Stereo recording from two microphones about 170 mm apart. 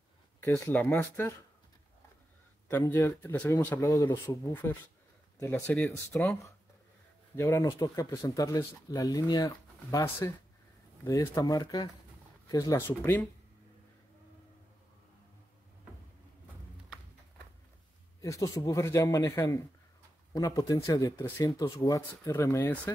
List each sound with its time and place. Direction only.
0.4 s speech: 10° left (ahead or behind)
2.7 s speech: 15° left (ahead or behind)
18.2 s speech: 20° left (ahead or behind)